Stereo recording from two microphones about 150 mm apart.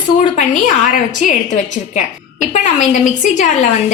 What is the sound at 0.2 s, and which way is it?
A woman's voice, 60° left (ahead or behind).